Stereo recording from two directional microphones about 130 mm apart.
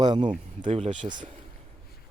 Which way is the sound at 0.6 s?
65° right (ahead or behind).